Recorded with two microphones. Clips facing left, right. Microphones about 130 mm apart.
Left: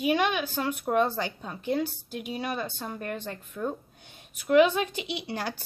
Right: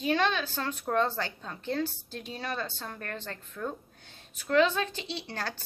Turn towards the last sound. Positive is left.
turn(degrees=15)  # may be behind; listen again after turning